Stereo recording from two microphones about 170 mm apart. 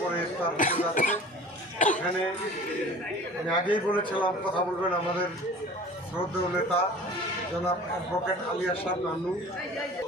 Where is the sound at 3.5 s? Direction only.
30° left (ahead or behind).